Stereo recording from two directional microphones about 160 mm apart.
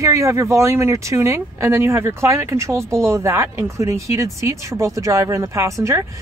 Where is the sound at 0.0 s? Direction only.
20° right (ahead or behind).